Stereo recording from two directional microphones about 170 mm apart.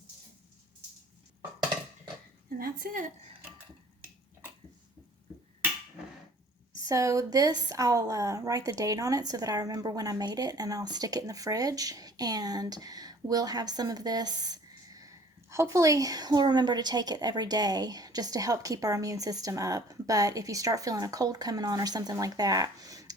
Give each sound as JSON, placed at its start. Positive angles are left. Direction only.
{"t": 2.6, "sound": "a woman's voice", "side_deg": -55}
{"t": 6.8, "sound": "a woman's voice", "side_deg": -20}